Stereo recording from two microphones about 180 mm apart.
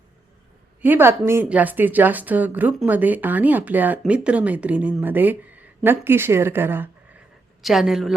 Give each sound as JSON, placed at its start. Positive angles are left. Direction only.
{"t": 0.8, "sound": "a woman's voice", "side_deg": -10}